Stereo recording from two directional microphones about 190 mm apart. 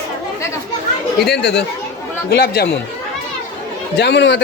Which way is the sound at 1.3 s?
60° left (ahead or behind).